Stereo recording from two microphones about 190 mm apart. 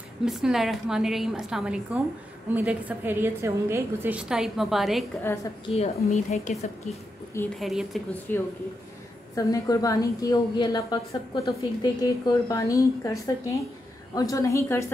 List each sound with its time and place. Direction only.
0.2 s a woman's voice: 5° right (ahead or behind)
5.2 s a woman's voice: 15° left (ahead or behind)
5.8 s a woman's voice: 35° left (ahead or behind)
7.3 s a woman's voice: 5° left (ahead or behind)
9.3 s a woman's voice: 15° left (ahead or behind)